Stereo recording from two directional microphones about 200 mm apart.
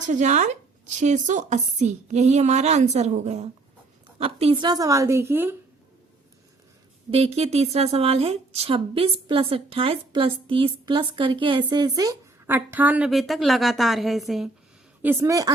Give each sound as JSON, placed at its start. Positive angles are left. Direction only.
{"t": 0.0, "sound": "speech", "side_deg": -35}
{"t": 7.1, "sound": "a woman's voice", "side_deg": -30}
{"t": 15.0, "sound": "speech", "side_deg": -10}